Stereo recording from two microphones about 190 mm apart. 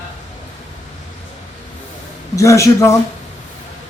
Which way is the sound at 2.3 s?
15° left (ahead or behind).